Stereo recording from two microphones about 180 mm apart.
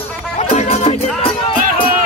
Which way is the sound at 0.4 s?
35° left (ahead or behind).